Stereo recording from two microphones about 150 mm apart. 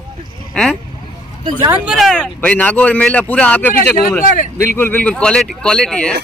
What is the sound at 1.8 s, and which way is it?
Speech, centre (ahead or behind).